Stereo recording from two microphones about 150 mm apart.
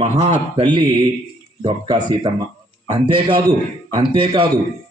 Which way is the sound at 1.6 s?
25° right (ahead or behind).